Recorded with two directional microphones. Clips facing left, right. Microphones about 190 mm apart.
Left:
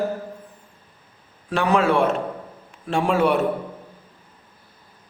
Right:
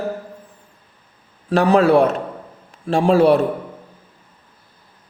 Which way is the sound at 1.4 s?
35° right (ahead or behind).